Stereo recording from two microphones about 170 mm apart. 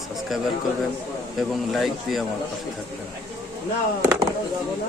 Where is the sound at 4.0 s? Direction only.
20° right (ahead or behind).